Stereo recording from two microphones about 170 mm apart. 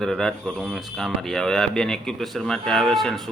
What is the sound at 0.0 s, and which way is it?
Speech, 5° left (ahead or behind).